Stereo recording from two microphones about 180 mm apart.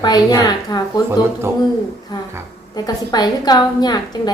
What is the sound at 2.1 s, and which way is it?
A woman's voice, 20° left (ahead or behind).